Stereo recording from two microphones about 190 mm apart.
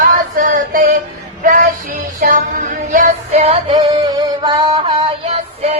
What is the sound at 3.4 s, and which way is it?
Music, 30° right (ahead or behind).